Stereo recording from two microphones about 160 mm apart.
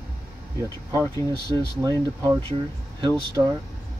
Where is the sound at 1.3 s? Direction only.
30° right (ahead or behind).